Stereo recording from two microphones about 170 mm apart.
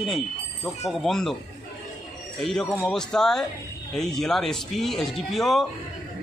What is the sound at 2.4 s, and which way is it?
Speech, 5° left (ahead or behind).